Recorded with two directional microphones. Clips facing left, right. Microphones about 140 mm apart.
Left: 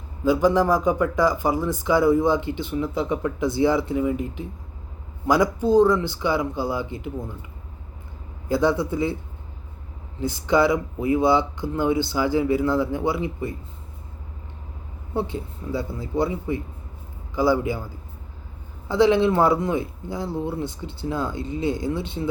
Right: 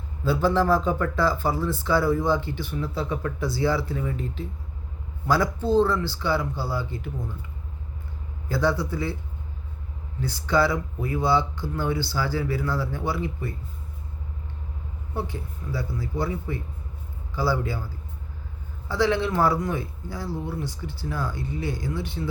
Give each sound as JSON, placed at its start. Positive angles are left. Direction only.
{"t": 0.3, "sound": "speech", "side_deg": 15}
{"t": 8.4, "sound": "speech", "side_deg": 20}
{"t": 10.2, "sound": "speech", "side_deg": 20}
{"t": 15.1, "sound": "speech", "side_deg": 25}
{"t": 18.9, "sound": "speech", "side_deg": 20}